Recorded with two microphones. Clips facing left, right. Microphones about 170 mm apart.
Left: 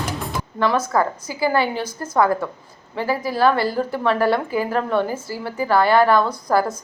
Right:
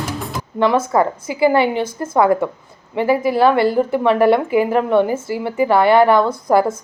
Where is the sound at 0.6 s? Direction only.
25° right (ahead or behind).